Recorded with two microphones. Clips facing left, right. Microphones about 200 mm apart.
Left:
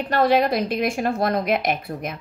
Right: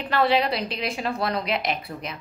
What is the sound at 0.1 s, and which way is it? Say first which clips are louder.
A woman's voice: left 3 dB; 45° left (ahead or behind).